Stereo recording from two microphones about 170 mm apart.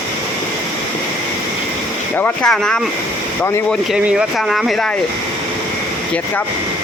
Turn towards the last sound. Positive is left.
turn(degrees=0)  # may be behind; listen again after turning